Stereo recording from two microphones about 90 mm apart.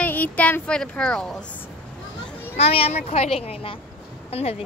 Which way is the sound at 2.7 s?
90° left.